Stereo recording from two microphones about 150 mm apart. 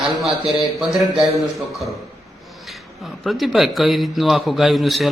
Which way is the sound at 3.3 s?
Centre (ahead or behind).